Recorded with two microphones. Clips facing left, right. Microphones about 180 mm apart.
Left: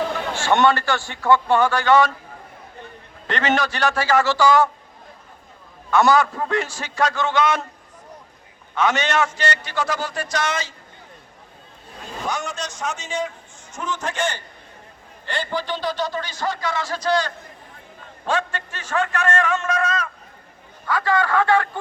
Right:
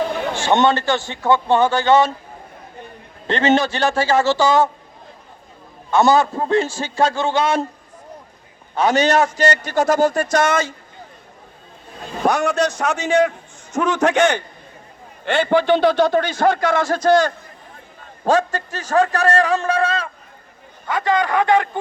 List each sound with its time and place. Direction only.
0.3 s a man's voice: 20° right (ahead or behind)
3.2 s a man's voice: 25° right (ahead or behind)
5.9 s a man's voice: 25° right (ahead or behind)
8.7 s a man's voice: 35° right (ahead or behind); by 10.8 s 50° right (ahead or behind)
12.2 s a man's voice: 60° right (ahead or behind); by 21.8 s 20° right (ahead or behind)